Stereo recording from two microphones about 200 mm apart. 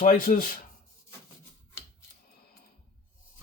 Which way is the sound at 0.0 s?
45° left (ahead or behind).